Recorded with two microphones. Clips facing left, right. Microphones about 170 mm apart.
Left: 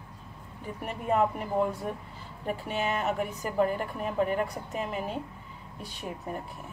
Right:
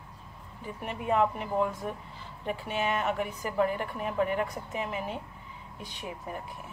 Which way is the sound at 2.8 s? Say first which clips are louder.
Even; 40° left (ahead or behind).